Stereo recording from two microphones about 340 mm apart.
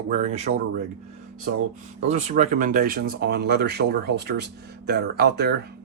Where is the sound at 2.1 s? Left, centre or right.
Centre.